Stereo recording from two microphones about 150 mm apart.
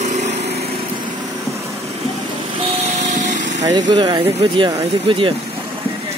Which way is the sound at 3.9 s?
30° right (ahead or behind).